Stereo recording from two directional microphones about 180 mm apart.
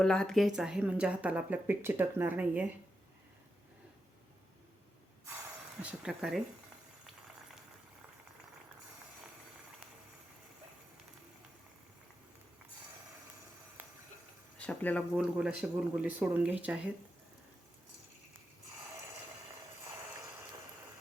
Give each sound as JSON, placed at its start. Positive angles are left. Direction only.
{"t": 0.0, "sound": "speech", "side_deg": 5}
{"t": 5.8, "sound": "speech", "side_deg": -5}
{"t": 14.7, "sound": "speech", "side_deg": 10}
{"t": 15.1, "sound": "speech", "side_deg": -5}